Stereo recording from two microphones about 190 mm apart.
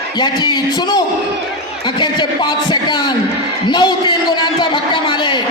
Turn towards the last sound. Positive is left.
turn(degrees=25)  # may be behind; listen again after turning